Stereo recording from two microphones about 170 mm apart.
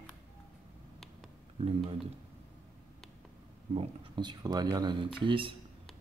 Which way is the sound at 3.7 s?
30° right (ahead or behind).